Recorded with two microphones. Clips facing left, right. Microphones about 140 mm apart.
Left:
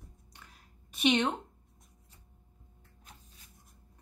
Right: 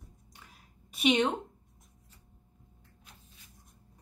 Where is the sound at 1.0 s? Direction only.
10° right (ahead or behind).